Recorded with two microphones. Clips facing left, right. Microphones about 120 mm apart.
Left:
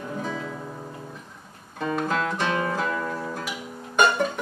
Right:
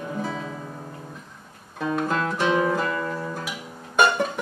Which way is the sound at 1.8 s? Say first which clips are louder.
Right 1 dB; centre (ahead or behind).